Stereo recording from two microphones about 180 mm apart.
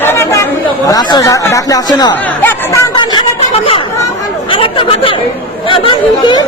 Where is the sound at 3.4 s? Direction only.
30° left (ahead or behind).